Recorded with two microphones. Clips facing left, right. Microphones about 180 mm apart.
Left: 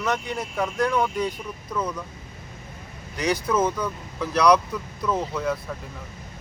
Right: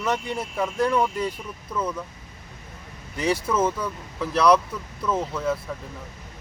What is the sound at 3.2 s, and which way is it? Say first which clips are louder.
Speech: even; 5° right (ahead or behind).